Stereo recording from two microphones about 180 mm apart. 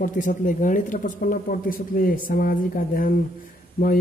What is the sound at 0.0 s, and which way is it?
Speech, 45° left (ahead or behind).